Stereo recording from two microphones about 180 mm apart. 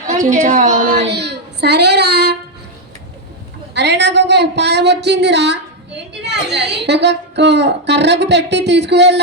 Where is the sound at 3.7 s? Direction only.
70° right (ahead or behind).